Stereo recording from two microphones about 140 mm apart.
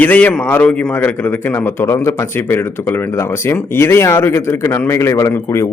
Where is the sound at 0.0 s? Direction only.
10° left (ahead or behind).